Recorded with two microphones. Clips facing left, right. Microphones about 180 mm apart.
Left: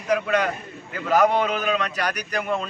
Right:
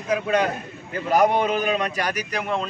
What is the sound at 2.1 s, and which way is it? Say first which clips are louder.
Speech: even; 5° right (ahead or behind).